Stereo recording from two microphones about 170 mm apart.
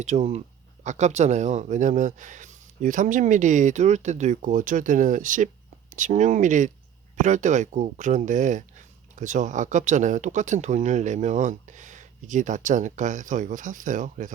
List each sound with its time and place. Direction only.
0.0 s speech: 40° right (ahead or behind)